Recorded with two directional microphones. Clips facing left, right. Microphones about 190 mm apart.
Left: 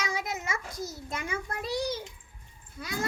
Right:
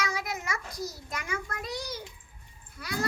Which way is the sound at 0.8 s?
25° left (ahead or behind).